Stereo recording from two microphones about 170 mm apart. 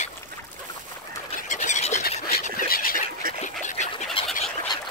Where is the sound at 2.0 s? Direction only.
60° left (ahead or behind).